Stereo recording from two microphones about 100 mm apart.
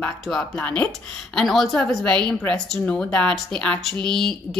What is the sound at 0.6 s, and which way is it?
A woman's voice, 10° left (ahead or behind).